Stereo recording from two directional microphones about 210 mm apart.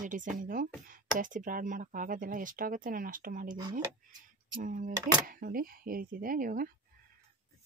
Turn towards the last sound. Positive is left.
turn(degrees=-40)  # may be behind; listen again after turning